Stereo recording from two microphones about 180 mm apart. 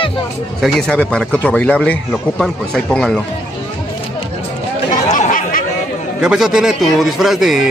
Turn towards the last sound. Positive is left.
turn(degrees=0)  # may be behind; listen again after turning